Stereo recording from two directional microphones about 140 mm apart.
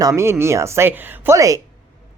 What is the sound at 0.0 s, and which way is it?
Speech, 20° right (ahead or behind).